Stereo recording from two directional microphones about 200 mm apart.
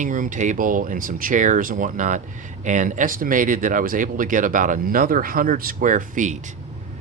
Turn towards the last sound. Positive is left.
turn(degrees=-40)  # may be behind; listen again after turning